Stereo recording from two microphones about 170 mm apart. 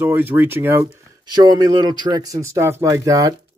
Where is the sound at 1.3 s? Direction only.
25° right (ahead or behind).